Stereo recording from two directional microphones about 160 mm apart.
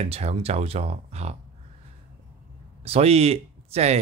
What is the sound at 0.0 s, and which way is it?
Speech, 40° right (ahead or behind).